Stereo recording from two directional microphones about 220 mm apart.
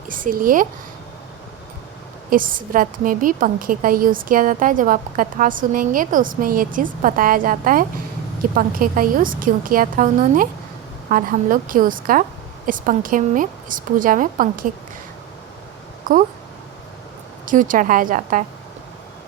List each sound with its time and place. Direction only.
0.1 s speech: 40° right (ahead or behind)
2.3 s a woman's voice: 40° right (ahead or behind)
16.1 s speech: 40° right (ahead or behind)
17.4 s a woman's voice: 35° right (ahead or behind)